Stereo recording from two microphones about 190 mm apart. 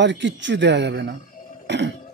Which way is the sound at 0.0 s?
70° right (ahead or behind).